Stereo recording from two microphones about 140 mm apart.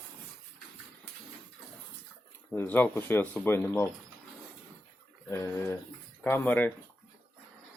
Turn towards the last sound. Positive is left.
turn(degrees=10)  # may be behind; listen again after turning